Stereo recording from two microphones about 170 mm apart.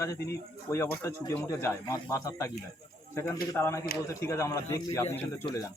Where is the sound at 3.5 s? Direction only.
15° left (ahead or behind).